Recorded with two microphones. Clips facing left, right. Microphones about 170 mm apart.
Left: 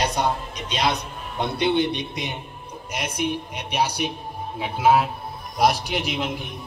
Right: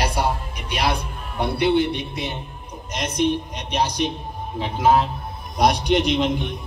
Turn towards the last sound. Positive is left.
turn(degrees=5)  # may be behind; listen again after turning